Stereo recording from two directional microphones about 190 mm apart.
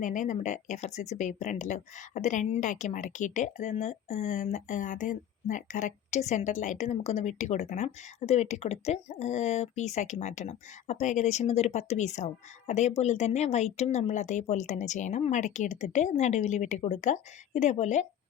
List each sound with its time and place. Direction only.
0.0 s speech: 40° left (ahead or behind)